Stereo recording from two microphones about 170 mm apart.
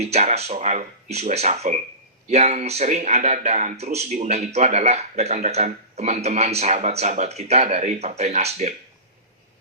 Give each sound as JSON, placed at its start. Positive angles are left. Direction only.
{"t": 0.0, "sound": "speech", "side_deg": -40}